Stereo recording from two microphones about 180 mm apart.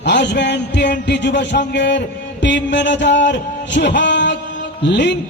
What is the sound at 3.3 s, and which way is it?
A man's voice, 80° left.